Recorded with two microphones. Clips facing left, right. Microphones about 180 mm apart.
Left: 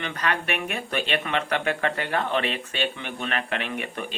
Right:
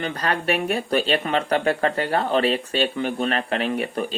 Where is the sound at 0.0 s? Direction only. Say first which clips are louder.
Right 4 dB; 35° right (ahead or behind).